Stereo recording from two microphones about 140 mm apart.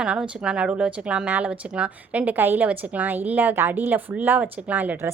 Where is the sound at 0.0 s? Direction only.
5° right (ahead or behind).